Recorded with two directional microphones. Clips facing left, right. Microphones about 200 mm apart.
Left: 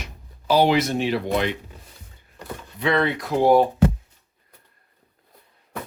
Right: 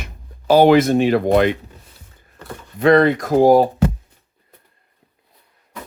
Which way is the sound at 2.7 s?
45° right (ahead or behind).